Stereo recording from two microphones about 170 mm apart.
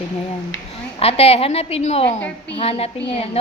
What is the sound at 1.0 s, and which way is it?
A woman's voice, 35° left (ahead or behind).